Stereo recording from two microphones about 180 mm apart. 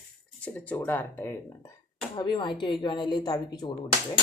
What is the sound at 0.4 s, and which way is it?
Speech, 10° left (ahead or behind).